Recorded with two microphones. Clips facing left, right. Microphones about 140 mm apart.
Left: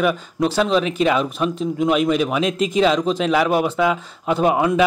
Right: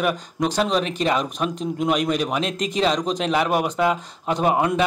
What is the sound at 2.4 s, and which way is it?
Speech, 40° right (ahead or behind).